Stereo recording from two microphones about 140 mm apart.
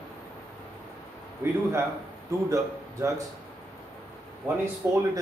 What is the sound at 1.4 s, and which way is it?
A man's voice, 20° right (ahead or behind).